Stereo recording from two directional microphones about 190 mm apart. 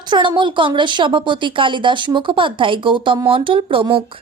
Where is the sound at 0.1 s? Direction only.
25° right (ahead or behind).